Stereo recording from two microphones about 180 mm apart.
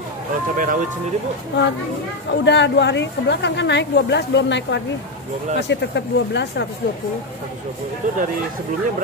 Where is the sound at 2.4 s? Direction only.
75° left (ahead or behind).